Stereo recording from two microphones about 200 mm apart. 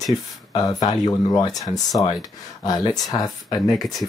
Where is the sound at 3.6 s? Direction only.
Centre (ahead or behind).